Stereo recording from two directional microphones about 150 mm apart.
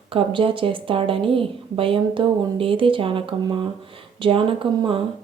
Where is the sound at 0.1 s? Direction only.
35° right (ahead or behind).